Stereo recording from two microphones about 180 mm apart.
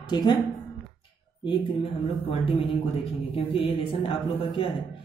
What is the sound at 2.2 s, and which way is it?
Speech, 30° left (ahead or behind).